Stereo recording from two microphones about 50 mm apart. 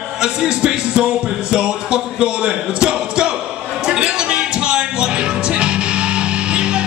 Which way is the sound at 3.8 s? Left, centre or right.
Centre.